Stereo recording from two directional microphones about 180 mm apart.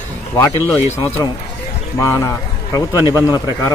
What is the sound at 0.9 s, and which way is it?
A man's voice, 15° left (ahead or behind).